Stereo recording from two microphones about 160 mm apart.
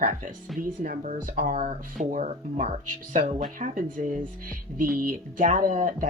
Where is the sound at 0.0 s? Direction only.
55° right (ahead or behind).